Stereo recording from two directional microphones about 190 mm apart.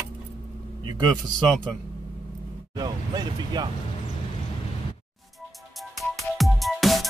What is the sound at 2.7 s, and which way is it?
Speech, 20° right (ahead or behind).